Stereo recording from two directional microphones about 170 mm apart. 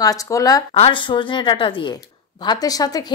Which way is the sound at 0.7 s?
35° left (ahead or behind).